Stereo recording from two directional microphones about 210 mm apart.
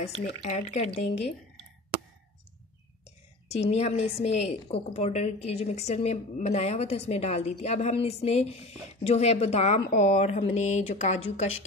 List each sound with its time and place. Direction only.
0.2 s a woman's voice: 35° left (ahead or behind)
3.4 s a woman's voice: 30° left (ahead or behind)